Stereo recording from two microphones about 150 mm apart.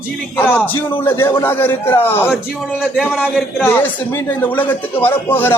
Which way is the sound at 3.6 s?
15° left (ahead or behind).